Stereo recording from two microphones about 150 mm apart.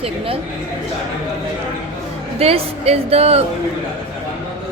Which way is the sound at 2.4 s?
40° right (ahead or behind).